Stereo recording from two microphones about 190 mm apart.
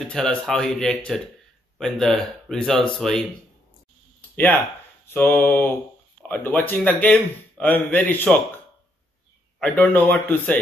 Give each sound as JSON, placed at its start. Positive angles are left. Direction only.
{"t": 0.0, "sound": "speech", "side_deg": 5}
{"t": 5.0, "sound": "a man's voice", "side_deg": 10}
{"t": 9.6, "sound": "a man's voice", "side_deg": 10}